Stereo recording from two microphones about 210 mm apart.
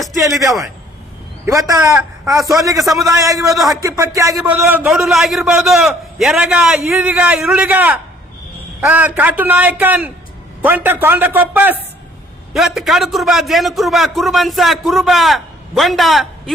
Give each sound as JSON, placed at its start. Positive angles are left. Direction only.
{"t": 0.0, "sound": "a sound", "side_deg": 0}
{"t": 1.5, "sound": "a man's voice", "side_deg": -15}
{"t": 3.5, "sound": "a man's voice", "side_deg": 0}
{"t": 3.8, "sound": "a man's voice", "side_deg": -15}